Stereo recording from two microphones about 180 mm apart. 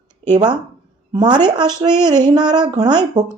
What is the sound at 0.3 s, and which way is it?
Speech, 25° right (ahead or behind).